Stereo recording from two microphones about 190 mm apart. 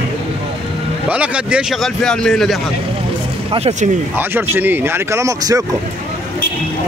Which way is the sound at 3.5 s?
35° right (ahead or behind).